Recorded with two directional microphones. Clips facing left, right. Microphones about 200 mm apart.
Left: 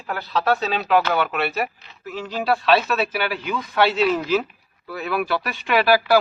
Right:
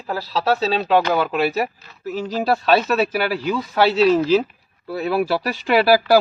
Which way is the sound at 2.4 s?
40° right (ahead or behind).